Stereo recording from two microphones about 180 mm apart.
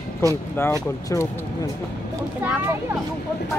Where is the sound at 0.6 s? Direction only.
15° left (ahead or behind).